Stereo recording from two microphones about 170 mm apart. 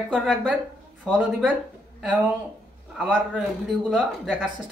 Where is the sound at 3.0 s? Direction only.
Centre (ahead or behind).